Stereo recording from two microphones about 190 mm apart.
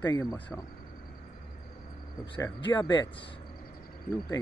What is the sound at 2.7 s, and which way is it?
Speech, 20° left (ahead or behind).